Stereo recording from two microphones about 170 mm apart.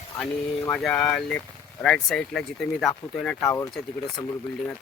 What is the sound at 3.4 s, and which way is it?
Speech, 20° left (ahead or behind).